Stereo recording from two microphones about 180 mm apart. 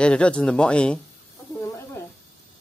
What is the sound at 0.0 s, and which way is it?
Speech, 5° left (ahead or behind).